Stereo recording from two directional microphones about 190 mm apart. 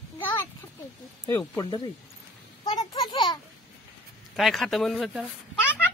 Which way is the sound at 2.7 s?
20° left (ahead or behind).